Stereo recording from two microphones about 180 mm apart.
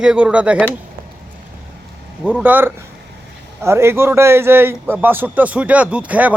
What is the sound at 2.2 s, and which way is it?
A man's voice, 10° right (ahead or behind).